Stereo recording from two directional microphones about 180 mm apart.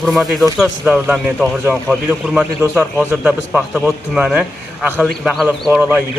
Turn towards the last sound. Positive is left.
turn(degrees=-10)  # may be behind; listen again after turning